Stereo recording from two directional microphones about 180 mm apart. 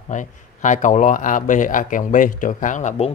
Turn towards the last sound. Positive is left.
turn(degrees=40)  # may be behind; listen again after turning